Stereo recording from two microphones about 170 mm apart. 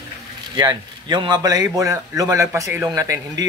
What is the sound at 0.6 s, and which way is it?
A man's voice, 25° right (ahead or behind).